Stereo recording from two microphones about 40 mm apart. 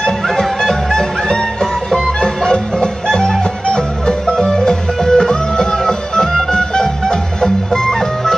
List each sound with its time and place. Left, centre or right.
0.0 s music: centre